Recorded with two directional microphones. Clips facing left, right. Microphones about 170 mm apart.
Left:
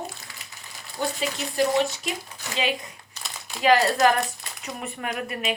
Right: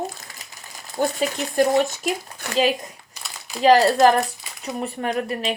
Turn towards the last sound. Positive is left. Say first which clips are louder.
# right 5 dB
turn(degrees=-35)  # may be behind; listen again after turning